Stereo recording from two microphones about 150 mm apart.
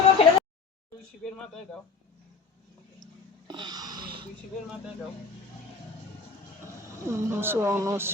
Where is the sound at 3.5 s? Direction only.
30° right (ahead or behind).